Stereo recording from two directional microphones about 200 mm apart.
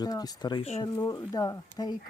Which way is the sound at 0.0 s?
20° left (ahead or behind).